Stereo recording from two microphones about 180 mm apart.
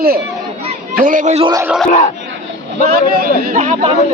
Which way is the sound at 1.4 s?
20° right (ahead or behind).